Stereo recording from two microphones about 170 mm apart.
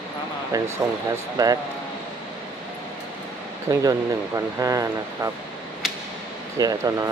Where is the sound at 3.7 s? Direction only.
20° right (ahead or behind).